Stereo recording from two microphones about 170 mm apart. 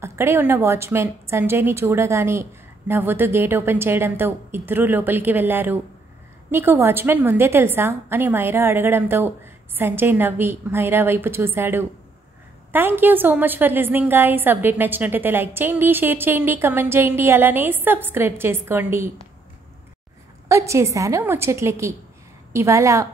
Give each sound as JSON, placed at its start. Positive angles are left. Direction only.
{"t": 0.0, "sound": "a woman's voice", "side_deg": -15}
{"t": 20.4, "sound": "a woman's voice", "side_deg": -15}